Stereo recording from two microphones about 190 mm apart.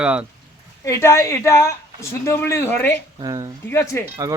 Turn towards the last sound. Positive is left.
turn(degrees=-20)  # may be behind; listen again after turning